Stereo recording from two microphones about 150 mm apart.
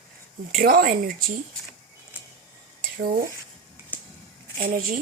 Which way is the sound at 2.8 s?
75° right (ahead or behind).